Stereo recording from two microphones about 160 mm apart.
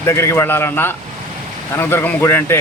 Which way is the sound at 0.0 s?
15° left (ahead or behind).